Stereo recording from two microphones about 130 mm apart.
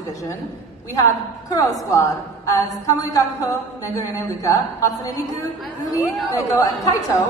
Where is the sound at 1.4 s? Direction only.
25° left (ahead or behind).